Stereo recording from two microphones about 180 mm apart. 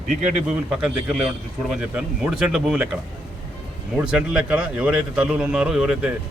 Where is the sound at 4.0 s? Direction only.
5° right (ahead or behind).